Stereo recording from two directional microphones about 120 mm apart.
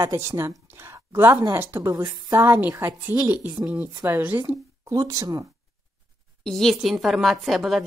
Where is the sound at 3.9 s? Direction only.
25° right (ahead or behind).